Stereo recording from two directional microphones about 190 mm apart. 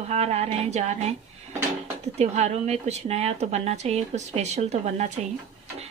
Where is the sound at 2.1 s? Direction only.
35° right (ahead or behind).